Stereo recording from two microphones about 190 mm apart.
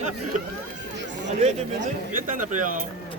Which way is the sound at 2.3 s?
45° right (ahead or behind).